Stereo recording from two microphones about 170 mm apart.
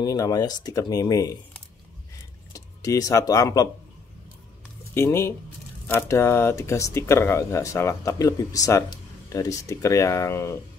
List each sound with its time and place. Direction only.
0.0 s speech: 20° left (ahead or behind)
2.5 s speech: 20° left (ahead or behind)
4.9 s speech: 15° left (ahead or behind)